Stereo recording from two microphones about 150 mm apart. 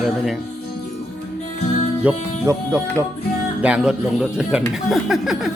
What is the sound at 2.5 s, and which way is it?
Speech, 20° right (ahead or behind).